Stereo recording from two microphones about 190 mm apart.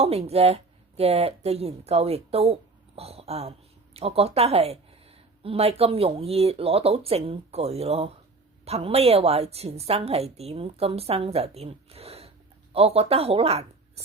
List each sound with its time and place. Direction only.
0.0 s speech: 30° right (ahead or behind)